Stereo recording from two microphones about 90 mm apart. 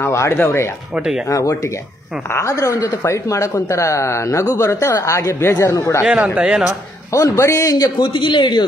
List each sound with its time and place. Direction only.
0.0 s speech: 30° left (ahead or behind)
0.9 s speech: 10° right (ahead or behind)
1.3 s speech: 35° left (ahead or behind)
6.0 s speech: 10° right (ahead or behind)
7.1 s speech: 35° left (ahead or behind)
8.0 s a man's voice: 65° left (ahead or behind)